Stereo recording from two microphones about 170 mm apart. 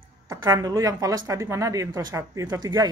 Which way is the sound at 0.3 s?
20° right (ahead or behind).